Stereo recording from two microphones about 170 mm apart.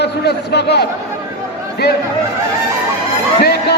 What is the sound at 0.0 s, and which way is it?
Speech, 75° left (ahead or behind).